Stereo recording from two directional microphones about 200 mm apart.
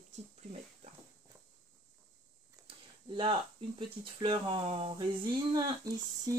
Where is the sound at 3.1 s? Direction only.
25° right (ahead or behind).